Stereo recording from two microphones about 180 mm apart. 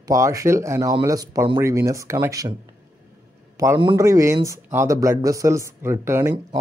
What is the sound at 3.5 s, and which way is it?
Speech, 20° right (ahead or behind).